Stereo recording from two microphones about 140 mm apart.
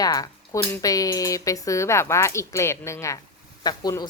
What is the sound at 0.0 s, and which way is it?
Speech, 25° left (ahead or behind).